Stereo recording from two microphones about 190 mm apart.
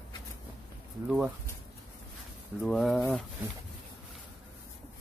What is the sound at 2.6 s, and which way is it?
Speech, centre (ahead or behind).